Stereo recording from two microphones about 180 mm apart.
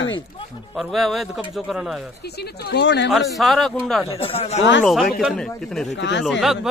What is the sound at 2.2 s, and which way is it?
Speech, 65° left (ahead or behind).